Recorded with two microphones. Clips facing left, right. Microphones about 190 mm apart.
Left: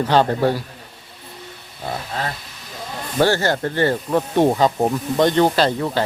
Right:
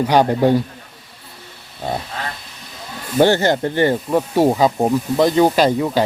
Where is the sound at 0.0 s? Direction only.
15° right (ahead or behind).